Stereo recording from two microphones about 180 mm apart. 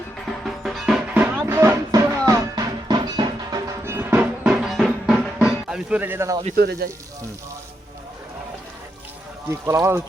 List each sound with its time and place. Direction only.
0.4 s music: centre (ahead or behind)
6.6 s speech: 60° right (ahead or behind)
9.5 s speech: 15° right (ahead or behind)